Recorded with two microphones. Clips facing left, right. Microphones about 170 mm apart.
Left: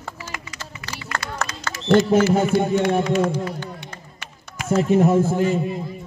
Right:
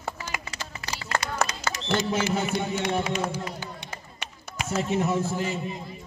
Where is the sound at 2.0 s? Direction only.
50° left (ahead or behind).